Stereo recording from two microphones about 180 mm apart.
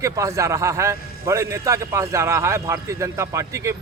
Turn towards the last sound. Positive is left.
turn(degrees=-15)  # may be behind; listen again after turning